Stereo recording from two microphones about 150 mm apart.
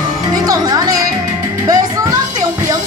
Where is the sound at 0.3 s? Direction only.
25° right (ahead or behind).